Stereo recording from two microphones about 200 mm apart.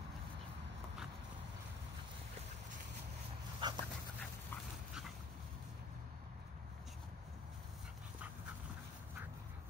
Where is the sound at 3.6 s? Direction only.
20° right (ahead or behind).